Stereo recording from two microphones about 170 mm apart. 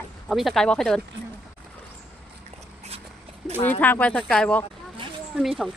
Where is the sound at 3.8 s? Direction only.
10° left (ahead or behind).